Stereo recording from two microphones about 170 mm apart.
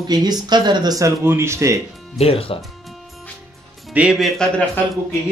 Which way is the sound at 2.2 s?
35° left (ahead or behind).